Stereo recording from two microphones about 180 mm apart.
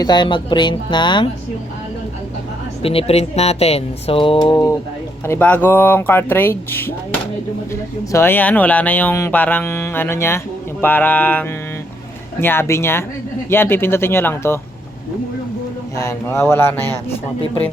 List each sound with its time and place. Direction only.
0.0 s speech: 25° left (ahead or behind)
2.8 s speech: 30° left (ahead or behind); by 14.6 s 15° left (ahead or behind)
16.0 s speech: 15° left (ahead or behind)